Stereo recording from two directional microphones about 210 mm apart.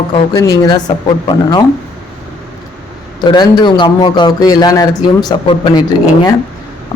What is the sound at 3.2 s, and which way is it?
A man's voice, 20° left (ahead or behind).